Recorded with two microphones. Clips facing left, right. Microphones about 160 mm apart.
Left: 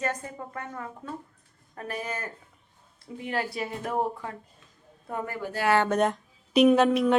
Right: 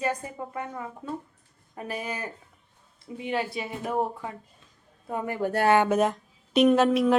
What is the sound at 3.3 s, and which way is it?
Speech, centre (ahead or behind).